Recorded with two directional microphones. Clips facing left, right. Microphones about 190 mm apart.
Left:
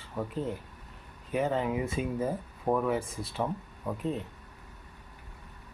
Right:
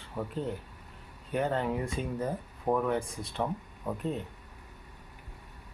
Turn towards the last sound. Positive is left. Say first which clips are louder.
# left 1 dB
turn(degrees=0)  # may be behind; listen again after turning